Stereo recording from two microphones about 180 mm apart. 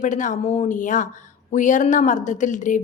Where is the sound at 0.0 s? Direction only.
45° left (ahead or behind).